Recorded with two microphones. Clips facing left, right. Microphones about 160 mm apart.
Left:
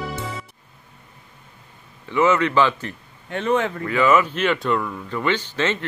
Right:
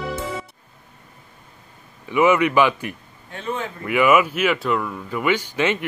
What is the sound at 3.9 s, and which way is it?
Speech, 15° right (ahead or behind).